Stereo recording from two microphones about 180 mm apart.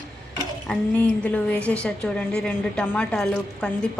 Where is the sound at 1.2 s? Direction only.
5° left (ahead or behind).